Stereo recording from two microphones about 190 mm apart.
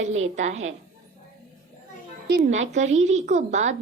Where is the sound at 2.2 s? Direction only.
60° right (ahead or behind).